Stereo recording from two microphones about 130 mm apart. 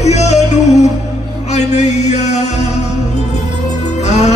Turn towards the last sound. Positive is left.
turn(degrees=60)  # may be behind; listen again after turning